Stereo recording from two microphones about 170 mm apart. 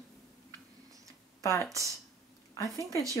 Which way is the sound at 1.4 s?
20° left (ahead or behind).